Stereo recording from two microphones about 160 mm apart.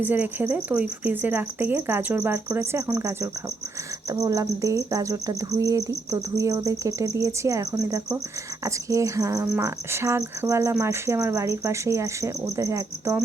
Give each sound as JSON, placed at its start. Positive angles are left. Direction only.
{"t": 0.0, "sound": "speech", "side_deg": -10}
{"t": 4.1, "sound": "cricket", "side_deg": -20}